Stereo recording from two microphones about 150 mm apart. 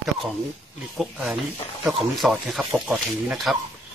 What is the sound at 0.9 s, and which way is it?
Speech, centre (ahead or behind).